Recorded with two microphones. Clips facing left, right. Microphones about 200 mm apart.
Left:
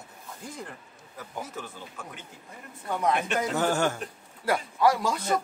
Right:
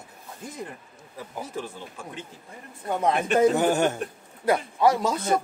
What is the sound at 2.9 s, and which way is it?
Speech, 25° right (ahead or behind).